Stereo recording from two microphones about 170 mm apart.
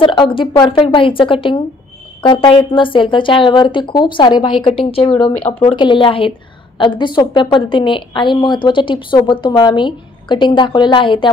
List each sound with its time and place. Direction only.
0.0 s a woman's voice: 25° left (ahead or behind)